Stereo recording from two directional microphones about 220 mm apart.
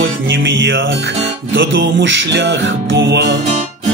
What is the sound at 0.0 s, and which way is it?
Music, 55° right (ahead or behind).